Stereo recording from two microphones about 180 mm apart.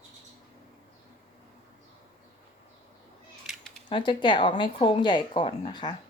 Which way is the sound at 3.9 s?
25° left (ahead or behind).